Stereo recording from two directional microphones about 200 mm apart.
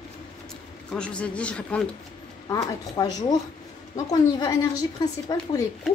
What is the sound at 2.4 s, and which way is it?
Speech, 20° left (ahead or behind).